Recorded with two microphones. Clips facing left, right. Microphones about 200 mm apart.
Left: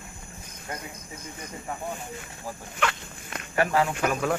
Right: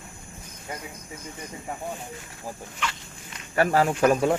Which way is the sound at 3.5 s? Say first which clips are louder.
Right 2 dB; 40° right (ahead or behind).